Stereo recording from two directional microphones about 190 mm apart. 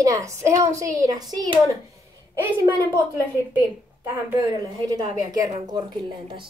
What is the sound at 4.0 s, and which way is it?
A woman's voice, 10° right (ahead or behind).